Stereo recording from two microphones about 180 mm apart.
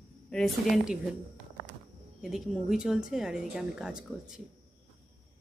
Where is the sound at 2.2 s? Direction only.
5° right (ahead or behind).